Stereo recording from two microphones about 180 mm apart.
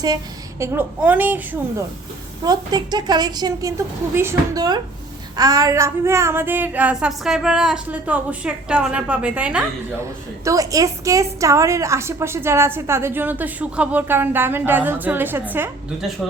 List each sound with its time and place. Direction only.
0.6 s a woman's voice: 10° right (ahead or behind)
2.4 s a woman's voice: 20° right (ahead or behind)
10.4 s a woman's voice: 20° right (ahead or behind)